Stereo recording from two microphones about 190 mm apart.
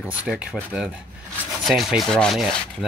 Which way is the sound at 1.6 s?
Centre (ahead or behind).